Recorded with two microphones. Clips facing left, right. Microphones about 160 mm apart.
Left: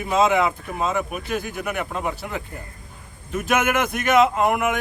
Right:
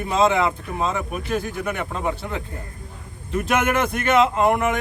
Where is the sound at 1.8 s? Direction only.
10° left (ahead or behind).